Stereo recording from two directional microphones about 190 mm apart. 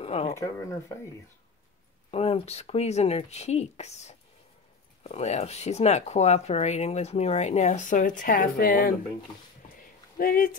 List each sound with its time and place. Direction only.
0.0 s a sound: 30° left (ahead or behind)
0.3 s speech: 15° left (ahead or behind)
2.0 s speech: 30° left (ahead or behind); by 8.9 s 50° left (ahead or behind)
10.1 s speech: 50° left (ahead or behind)